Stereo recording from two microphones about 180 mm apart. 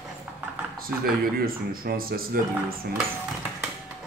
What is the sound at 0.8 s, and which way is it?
Speech, 55° right (ahead or behind).